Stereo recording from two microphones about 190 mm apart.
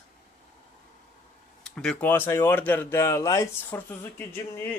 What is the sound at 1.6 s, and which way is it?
Speech, 5° left (ahead or behind).